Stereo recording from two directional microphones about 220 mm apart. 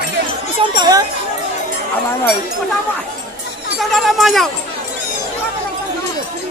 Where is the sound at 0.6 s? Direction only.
20° right (ahead or behind).